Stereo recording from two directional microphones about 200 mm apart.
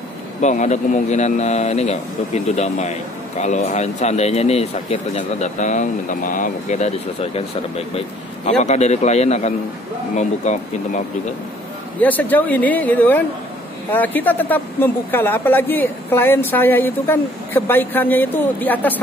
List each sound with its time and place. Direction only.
0.4 s speech: 35° left (ahead or behind)
12.0 s speech: 10° left (ahead or behind)